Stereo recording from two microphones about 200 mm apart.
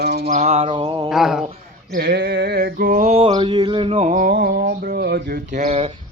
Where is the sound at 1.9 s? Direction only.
50° right (ahead or behind); by 4.1 s 30° right (ahead or behind).